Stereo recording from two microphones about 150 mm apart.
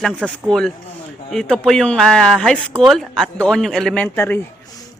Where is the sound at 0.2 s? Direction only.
5° left (ahead or behind).